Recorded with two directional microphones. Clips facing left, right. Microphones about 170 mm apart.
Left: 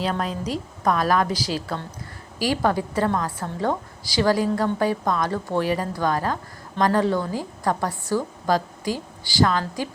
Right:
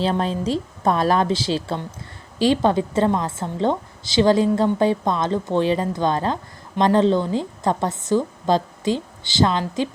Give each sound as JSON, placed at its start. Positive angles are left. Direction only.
{"t": 0.0, "sound": "a woman's voice", "side_deg": -30}